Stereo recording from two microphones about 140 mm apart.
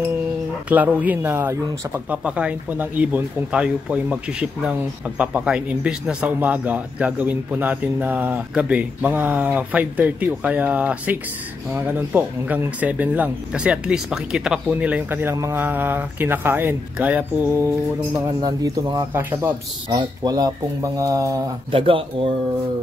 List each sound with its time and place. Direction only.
0.7 s speech: 10° right (ahead or behind)
18.1 s speech: 25° right (ahead or behind)
21.7 s speech: 40° right (ahead or behind)